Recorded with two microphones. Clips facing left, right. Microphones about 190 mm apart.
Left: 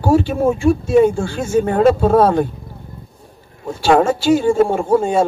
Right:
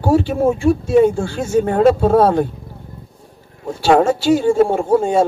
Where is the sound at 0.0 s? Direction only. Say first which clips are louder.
Even; 35° right (ahead or behind).